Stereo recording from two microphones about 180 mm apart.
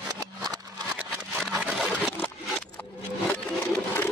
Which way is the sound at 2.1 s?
10° left (ahead or behind).